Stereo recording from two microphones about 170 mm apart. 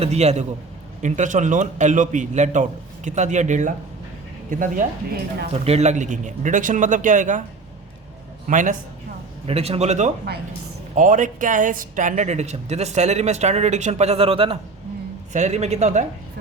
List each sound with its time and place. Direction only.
0.0 s a man's voice: 40° right (ahead or behind); by 5.5 s 55° right (ahead or behind)
5.6 s a man's voice: 40° right (ahead or behind)
8.4 s a man's voice: 50° right (ahead or behind)
9.5 s a man's voice: 35° right (ahead or behind)